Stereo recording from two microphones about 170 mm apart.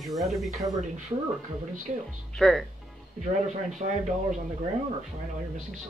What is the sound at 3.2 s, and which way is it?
Speech, 45° right (ahead or behind).